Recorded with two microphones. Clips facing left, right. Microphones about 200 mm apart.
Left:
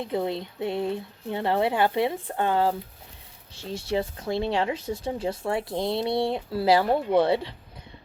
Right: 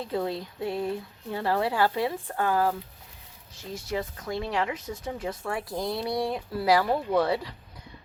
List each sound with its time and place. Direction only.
0.0 s speech: 20° left (ahead or behind)